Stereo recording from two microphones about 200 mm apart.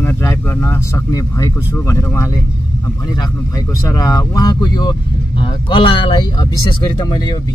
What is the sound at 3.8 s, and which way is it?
Speech, 20° left (ahead or behind).